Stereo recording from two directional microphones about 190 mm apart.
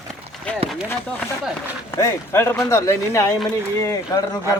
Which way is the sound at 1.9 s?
15° left (ahead or behind).